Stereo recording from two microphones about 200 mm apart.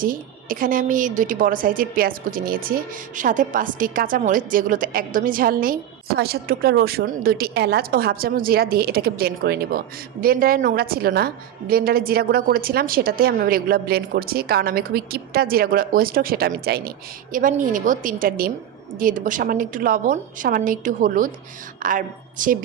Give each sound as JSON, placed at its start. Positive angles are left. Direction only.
{"t": 0.0, "sound": "a woman's voice", "side_deg": -45}